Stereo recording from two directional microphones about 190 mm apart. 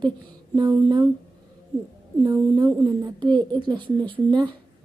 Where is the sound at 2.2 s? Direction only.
20° right (ahead or behind).